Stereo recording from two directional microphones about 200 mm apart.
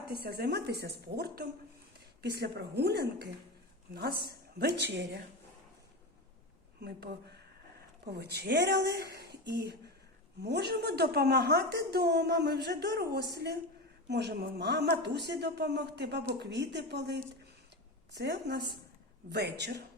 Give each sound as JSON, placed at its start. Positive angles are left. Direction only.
{"t": 0.1, "sound": "a woman's voice", "side_deg": -50}
{"t": 6.7, "sound": "a woman's voice", "side_deg": -50}